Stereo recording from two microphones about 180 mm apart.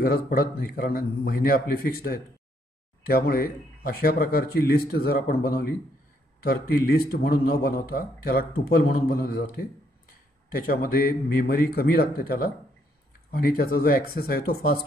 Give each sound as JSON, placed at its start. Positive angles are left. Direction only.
{"t": 0.0, "sound": "a man's voice", "side_deg": 55}
{"t": 10.7, "sound": "a man's voice", "side_deg": 55}